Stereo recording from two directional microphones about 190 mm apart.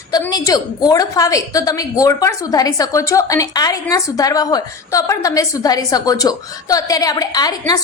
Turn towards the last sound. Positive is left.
turn(degrees=20)  # may be behind; listen again after turning